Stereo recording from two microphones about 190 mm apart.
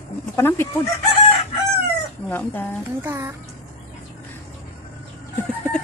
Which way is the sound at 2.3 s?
10° left (ahead or behind).